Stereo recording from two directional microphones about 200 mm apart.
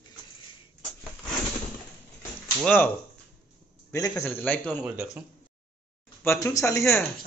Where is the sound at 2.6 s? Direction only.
10° left (ahead or behind).